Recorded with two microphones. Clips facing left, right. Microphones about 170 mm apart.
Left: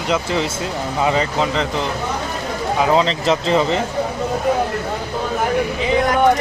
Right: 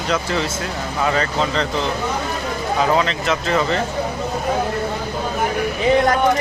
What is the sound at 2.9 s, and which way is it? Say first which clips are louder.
Speech: left 3 dB; 25° left (ahead or behind).